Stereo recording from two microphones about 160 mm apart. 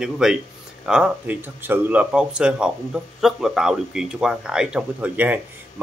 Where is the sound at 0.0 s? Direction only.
5° right (ahead or behind).